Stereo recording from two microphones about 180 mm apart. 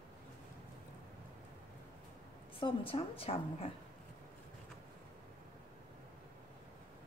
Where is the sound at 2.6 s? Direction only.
30° left (ahead or behind).